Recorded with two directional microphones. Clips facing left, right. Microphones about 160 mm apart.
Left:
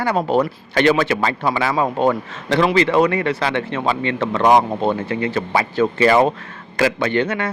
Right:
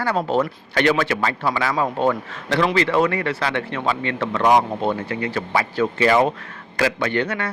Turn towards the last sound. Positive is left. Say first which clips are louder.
# left 3 dB
turn(degrees=20)  # may be behind; listen again after turning